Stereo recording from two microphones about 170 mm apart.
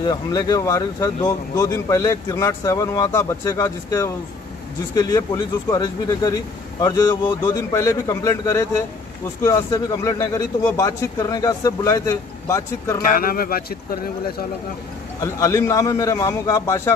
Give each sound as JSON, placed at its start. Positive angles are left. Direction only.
{"t": 0.0, "sound": "speech", "side_deg": 20}
{"t": 13.0, "sound": "speech", "side_deg": 60}
{"t": 15.1, "sound": "speech", "side_deg": 20}